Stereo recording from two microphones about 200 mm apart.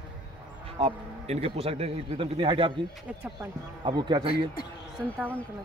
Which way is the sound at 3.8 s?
20° right (ahead or behind).